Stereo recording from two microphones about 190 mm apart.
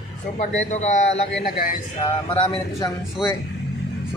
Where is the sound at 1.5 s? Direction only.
50° left (ahead or behind).